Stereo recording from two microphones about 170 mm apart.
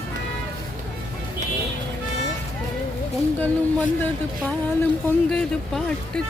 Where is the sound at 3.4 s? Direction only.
10° left (ahead or behind).